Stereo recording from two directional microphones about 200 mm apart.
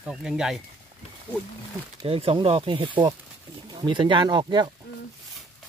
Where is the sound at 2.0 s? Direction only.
30° right (ahead or behind).